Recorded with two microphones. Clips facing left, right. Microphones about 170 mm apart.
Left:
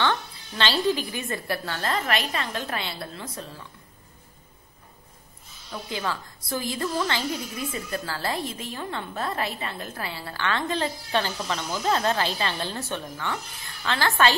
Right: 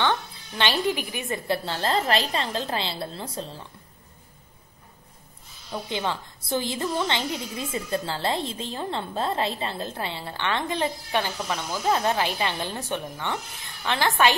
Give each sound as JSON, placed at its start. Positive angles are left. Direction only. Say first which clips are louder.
{"t": 0.0, "sound": "a woman's voice", "louder": "right 1 dB", "side_deg": -15}
{"t": 1.6, "sound": "a woman's voice", "louder": "right 3 dB", "side_deg": -30}
{"t": 5.7, "sound": "a woman's voice", "louder": "right 2 dB", "side_deg": -20}